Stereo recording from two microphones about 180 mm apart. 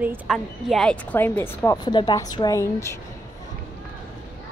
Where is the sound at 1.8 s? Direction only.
25° left (ahead or behind).